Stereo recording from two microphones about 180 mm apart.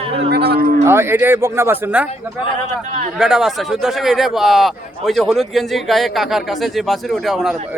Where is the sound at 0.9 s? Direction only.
15° right (ahead or behind).